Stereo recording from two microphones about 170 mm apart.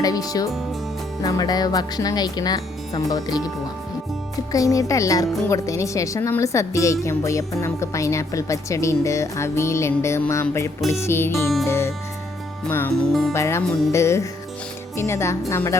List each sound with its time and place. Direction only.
0.0 s speech: 20° left (ahead or behind)
4.5 s speech: 20° left (ahead or behind)
11.6 s music: 15° left (ahead or behind)
12.6 s speech: 10° left (ahead or behind)